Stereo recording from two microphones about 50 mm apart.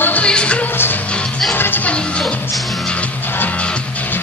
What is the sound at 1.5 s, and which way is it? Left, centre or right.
Music, left.